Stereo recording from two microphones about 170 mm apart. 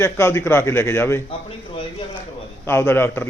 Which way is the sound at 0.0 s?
15° left (ahead or behind).